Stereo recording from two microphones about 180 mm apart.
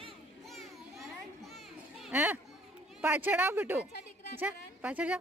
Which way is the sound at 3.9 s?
65° left (ahead or behind).